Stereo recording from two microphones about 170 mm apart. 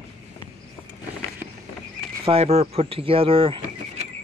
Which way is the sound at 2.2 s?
35° right (ahead or behind).